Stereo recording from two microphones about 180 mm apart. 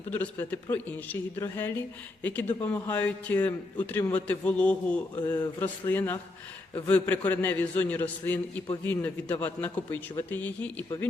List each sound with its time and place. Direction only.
0.1 s speech: 10° left (ahead or behind)
5.1 s speech: 20° left (ahead or behind)
5.6 s speech: 10° left (ahead or behind)